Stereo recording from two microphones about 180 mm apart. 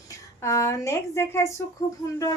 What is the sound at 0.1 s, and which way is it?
Speech, 15° left (ahead or behind).